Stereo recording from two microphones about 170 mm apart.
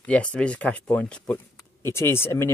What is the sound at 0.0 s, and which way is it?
Speech, 10° left (ahead or behind).